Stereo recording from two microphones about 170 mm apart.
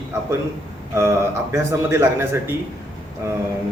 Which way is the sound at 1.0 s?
15° right (ahead or behind).